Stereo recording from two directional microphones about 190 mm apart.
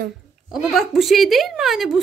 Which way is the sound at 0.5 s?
Centre (ahead or behind).